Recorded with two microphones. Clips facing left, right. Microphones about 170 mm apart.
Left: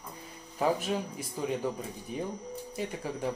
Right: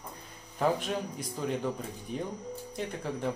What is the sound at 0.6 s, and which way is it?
Speech, 5° left (ahead or behind).